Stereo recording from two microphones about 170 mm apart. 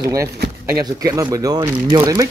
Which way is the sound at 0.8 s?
20° right (ahead or behind).